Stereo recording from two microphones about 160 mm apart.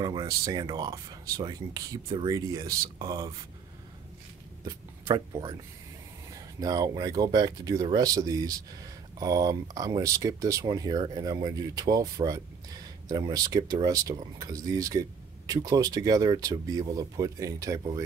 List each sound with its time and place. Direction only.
0.0 s speech: 30° right (ahead or behind)
4.6 s speech: 25° right (ahead or behind)